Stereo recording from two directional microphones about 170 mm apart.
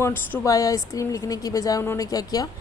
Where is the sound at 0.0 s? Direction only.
15° left (ahead or behind).